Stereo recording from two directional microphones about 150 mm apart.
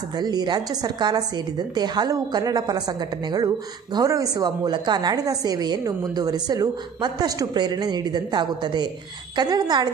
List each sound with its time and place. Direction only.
0.2 s speech: 25° right (ahead or behind)